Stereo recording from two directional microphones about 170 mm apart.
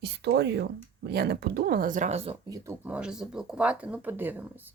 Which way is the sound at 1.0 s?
75° right (ahead or behind).